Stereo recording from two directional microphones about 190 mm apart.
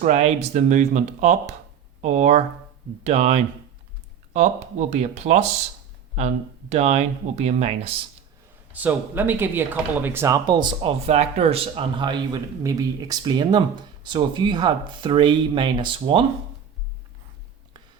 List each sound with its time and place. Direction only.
0.0 s speech: 35° right (ahead or behind)
8.7 s speech: 10° right (ahead or behind); by 16.2 s 25° right (ahead or behind)